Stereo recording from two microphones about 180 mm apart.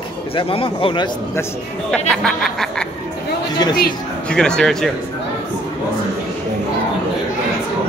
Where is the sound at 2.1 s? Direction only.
5° left (ahead or behind).